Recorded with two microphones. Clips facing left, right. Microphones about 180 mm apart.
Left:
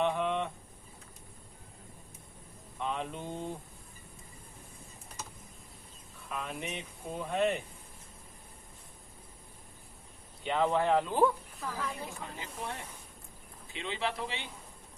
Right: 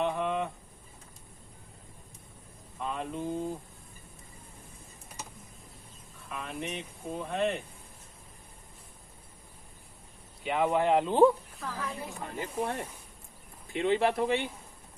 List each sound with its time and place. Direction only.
0.0 s a sound: 5° right (ahead or behind)
2.8 s mantra: centre (ahead or behind)
6.2 s speech: centre (ahead or behind)
10.4 s speech: 10° right (ahead or behind)
11.6 s a woman's voice: 5° right (ahead or behind)
12.2 s speech: 55° right (ahead or behind)